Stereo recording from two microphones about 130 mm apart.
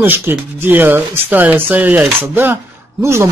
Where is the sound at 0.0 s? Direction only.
15° right (ahead or behind).